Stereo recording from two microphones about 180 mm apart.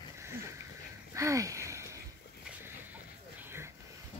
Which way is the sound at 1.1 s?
15° right (ahead or behind).